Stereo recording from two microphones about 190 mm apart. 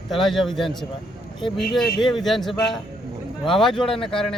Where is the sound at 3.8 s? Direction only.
30° left (ahead or behind).